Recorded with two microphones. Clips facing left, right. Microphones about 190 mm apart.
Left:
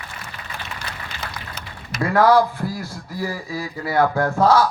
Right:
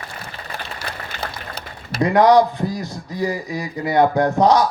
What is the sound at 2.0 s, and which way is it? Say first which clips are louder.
A man's voice: right 3 dB; 20° right (ahead or behind).